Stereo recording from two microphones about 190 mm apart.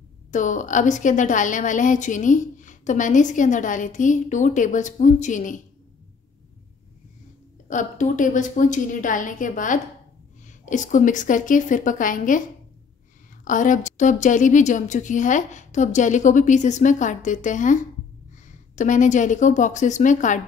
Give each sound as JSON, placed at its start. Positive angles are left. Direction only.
{"t": 0.3, "sound": "a woman's voice", "side_deg": 40}
{"t": 7.6, "sound": "a woman's voice", "side_deg": 40}